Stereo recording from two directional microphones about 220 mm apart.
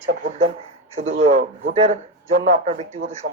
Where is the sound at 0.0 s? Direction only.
35° right (ahead or behind).